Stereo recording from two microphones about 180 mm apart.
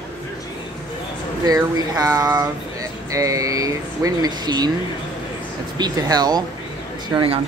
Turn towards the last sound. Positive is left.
turn(degrees=-15)  # may be behind; listen again after turning